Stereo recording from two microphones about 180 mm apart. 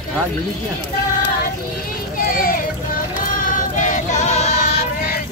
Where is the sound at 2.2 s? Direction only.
50° left (ahead or behind).